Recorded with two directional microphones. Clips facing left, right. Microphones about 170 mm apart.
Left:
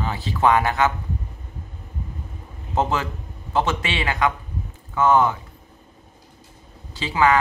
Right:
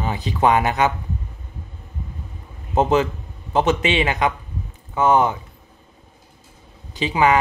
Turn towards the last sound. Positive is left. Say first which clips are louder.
# right 2 dB
turn(degrees=-20)  # may be behind; listen again after turning